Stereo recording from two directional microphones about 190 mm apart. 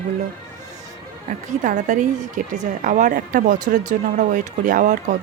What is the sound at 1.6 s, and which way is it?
A woman's voice, 40° right (ahead or behind).